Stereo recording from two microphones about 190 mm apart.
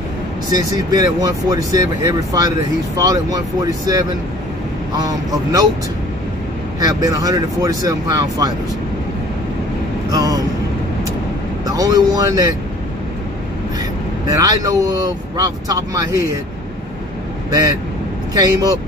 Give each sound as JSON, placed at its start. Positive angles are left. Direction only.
{"t": 0.5, "sound": "speech", "side_deg": -20}
{"t": 6.8, "sound": "speech", "side_deg": -20}
{"t": 10.1, "sound": "speech", "side_deg": -20}
{"t": 11.6, "sound": "speech", "side_deg": -20}
{"t": 14.3, "sound": "speech", "side_deg": -20}
{"t": 18.3, "sound": "speech", "side_deg": -20}